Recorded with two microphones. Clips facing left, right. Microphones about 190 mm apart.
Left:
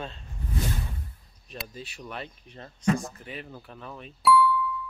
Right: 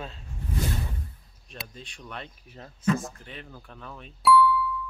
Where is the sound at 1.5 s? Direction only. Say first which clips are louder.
Left 3 dB; 5° left (ahead or behind).